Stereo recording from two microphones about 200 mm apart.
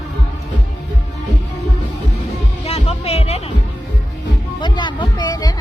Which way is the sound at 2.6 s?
30° left (ahead or behind).